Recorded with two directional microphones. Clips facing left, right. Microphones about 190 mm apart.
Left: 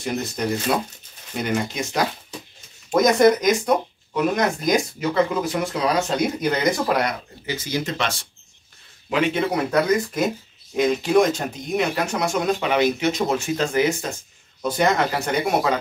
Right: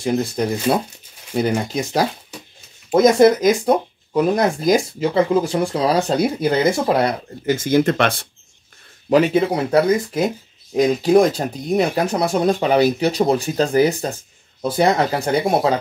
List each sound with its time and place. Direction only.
0.0 s speech: 30° right (ahead or behind)
7.4 s speech: 50° right (ahead or behind)
9.1 s speech: 40° right (ahead or behind)